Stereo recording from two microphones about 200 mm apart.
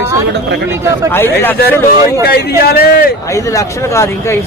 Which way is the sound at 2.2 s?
55° left (ahead or behind).